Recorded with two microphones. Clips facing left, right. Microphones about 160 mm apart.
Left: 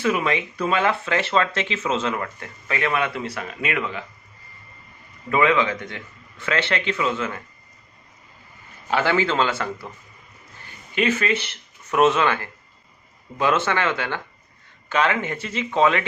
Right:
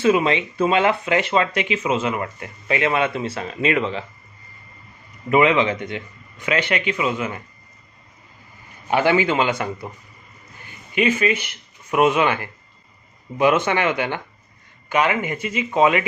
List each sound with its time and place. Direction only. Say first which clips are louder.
0.0 s speech: right 5 dB; 25° right (ahead or behind)
5.3 s a man's voice: right 3 dB; 20° right (ahead or behind)
8.9 s a man's voice: right 3 dB; 15° right (ahead or behind)
10.9 s a man's voice: right 2 dB; 10° right (ahead or behind)